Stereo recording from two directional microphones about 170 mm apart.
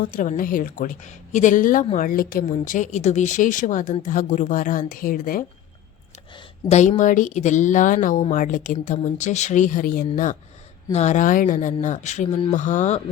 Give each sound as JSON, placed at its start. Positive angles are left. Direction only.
{"t": 0.0, "sound": "speech", "side_deg": 55}
{"t": 6.7, "sound": "speech", "side_deg": 40}
{"t": 10.9, "sound": "speech", "side_deg": 45}